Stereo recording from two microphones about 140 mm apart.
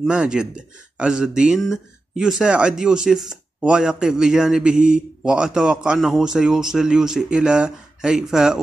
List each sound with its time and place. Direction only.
0.0 s speech: 5° right (ahead or behind)